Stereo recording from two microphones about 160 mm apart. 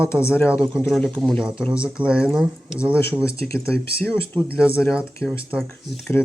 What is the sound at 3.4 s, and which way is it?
Speech, 10° left (ahead or behind).